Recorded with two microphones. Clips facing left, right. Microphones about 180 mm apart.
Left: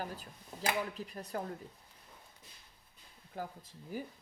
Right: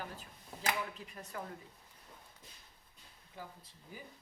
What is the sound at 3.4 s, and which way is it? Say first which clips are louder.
Speech: left 7 dB; 45° left (ahead or behind).